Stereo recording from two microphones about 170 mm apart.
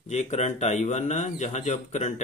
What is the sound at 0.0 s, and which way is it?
A man's voice, 45° left (ahead or behind).